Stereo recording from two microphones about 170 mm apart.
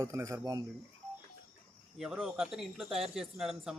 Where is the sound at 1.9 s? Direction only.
5° right (ahead or behind).